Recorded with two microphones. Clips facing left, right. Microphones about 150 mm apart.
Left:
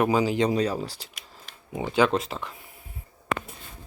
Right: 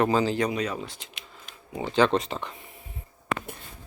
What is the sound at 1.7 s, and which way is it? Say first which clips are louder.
Speech: even; 10° left (ahead or behind).